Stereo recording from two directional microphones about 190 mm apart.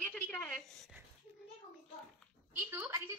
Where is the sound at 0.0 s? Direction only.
5° left (ahead or behind).